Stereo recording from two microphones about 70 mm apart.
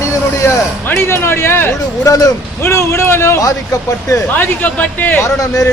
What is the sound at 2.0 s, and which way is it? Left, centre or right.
Speech, left.